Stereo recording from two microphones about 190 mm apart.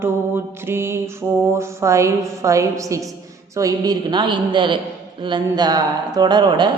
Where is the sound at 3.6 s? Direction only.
20° right (ahead or behind).